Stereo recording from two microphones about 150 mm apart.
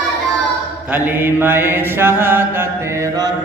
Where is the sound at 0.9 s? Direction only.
15° right (ahead or behind).